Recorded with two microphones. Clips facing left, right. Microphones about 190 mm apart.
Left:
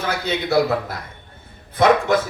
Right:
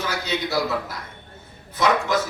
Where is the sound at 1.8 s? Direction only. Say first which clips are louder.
Left 6 dB; 55° left (ahead or behind).